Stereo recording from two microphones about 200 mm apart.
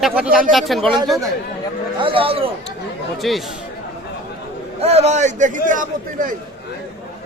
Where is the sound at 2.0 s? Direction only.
25° right (ahead or behind).